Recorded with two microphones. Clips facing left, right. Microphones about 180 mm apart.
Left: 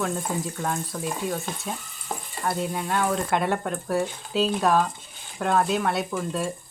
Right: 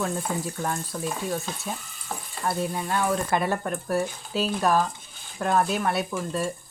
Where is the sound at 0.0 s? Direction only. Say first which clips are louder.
Left 1 dB; centre (ahead or behind).